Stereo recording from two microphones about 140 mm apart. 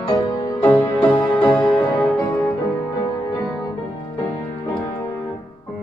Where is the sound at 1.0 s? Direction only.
10° left (ahead or behind).